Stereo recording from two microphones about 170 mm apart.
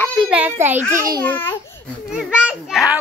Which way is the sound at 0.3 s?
10° right (ahead or behind).